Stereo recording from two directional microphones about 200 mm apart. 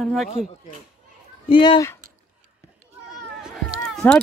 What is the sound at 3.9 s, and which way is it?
Music, 5° left (ahead or behind).